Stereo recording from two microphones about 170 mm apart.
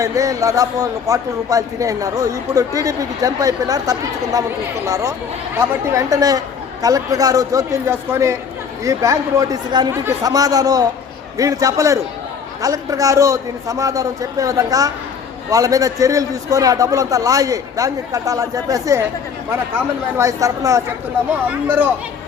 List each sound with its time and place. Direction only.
0.0 s a man's voice: 20° right (ahead or behind)
20.1 s a man's voice: 20° right (ahead or behind)